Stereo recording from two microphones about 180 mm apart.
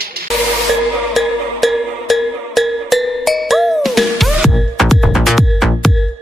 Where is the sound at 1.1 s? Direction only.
Centre (ahead or behind).